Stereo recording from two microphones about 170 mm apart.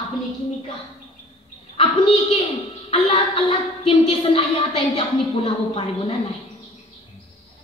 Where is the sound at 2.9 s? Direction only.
35° left (ahead or behind).